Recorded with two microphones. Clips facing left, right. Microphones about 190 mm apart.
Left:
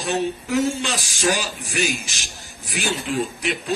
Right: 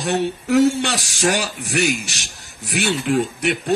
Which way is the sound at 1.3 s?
75° right (ahead or behind).